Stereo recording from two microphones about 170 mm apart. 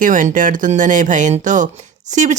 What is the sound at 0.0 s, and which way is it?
Speech, 50° right (ahead or behind).